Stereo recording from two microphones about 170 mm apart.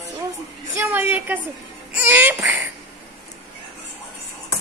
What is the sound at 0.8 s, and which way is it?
A woman's voice, 10° right (ahead or behind).